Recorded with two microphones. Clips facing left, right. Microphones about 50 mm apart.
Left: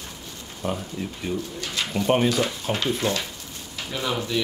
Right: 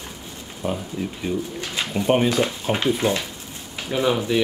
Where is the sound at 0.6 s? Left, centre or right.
Centre.